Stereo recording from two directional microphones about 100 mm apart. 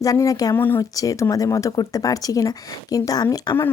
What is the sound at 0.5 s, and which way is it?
Speech, 20° left (ahead or behind).